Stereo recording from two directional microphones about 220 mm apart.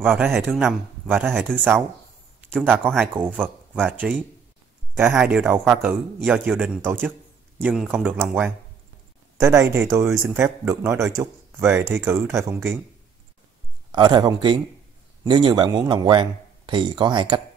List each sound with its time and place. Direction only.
0.0 s speech: 5° right (ahead or behind)
13.9 s speech: 20° right (ahead or behind)